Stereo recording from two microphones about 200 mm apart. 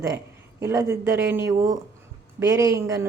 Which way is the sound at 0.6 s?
15° right (ahead or behind).